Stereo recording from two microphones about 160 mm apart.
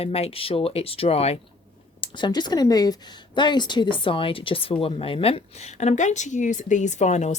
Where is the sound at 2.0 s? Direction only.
30° left (ahead or behind).